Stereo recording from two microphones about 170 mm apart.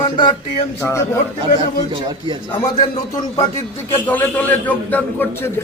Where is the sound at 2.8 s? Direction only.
40° left (ahead or behind).